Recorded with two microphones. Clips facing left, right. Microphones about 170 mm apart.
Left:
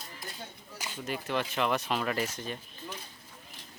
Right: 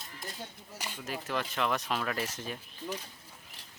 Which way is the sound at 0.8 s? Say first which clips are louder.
Left 3 dB; centre (ahead or behind).